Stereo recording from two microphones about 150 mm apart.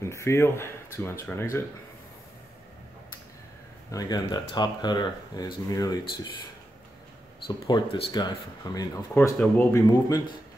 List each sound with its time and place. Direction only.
0.0 s speech: 20° left (ahead or behind)
3.9 s speech: 25° left (ahead or behind)
7.4 s speech: 35° left (ahead or behind)
9.4 s speech: 15° left (ahead or behind)